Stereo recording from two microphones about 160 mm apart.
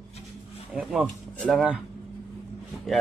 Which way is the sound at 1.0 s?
5° left (ahead or behind).